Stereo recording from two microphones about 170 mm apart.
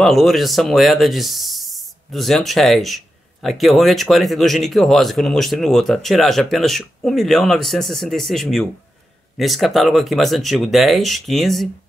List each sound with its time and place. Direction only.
0.0 s speech: centre (ahead or behind)